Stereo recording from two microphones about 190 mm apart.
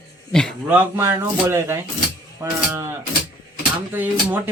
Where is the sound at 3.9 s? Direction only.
10° right (ahead or behind).